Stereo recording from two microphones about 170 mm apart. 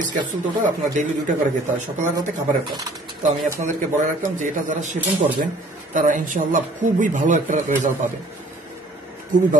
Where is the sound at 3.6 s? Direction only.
45° right (ahead or behind).